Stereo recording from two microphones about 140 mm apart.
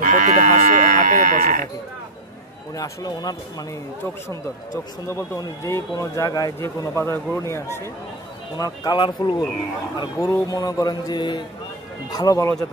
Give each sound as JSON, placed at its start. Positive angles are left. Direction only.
{"t": 0.0, "sound": "livestock", "side_deg": -65}
{"t": 2.7, "sound": "speech", "side_deg": 25}
{"t": 5.0, "sound": "speech", "side_deg": 20}
{"t": 10.1, "sound": "speech", "side_deg": 20}